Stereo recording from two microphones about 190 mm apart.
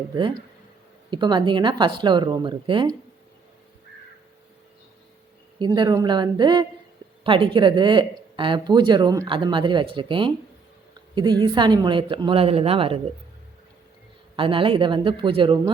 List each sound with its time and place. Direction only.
1.1 s speech: 25° right (ahead or behind)
5.5 s speech: 25° right (ahead or behind)
14.3 s speech: 25° right (ahead or behind)